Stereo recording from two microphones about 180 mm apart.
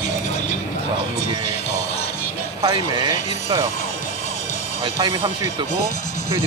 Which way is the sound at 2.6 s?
20° right (ahead or behind).